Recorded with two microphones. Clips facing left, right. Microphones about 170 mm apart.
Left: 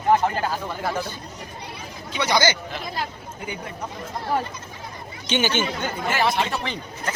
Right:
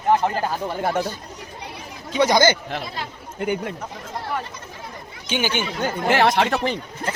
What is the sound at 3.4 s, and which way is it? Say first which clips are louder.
Speech: right 10 dB; 70° right (ahead or behind).